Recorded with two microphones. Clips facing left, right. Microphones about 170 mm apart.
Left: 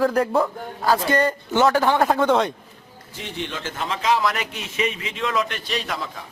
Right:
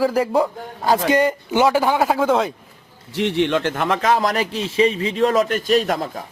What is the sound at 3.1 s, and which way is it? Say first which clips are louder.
A man's voice: right 13 dB; 70° right (ahead or behind).